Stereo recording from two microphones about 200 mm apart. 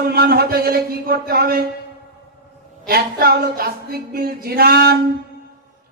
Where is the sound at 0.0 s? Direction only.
50° right (ahead or behind).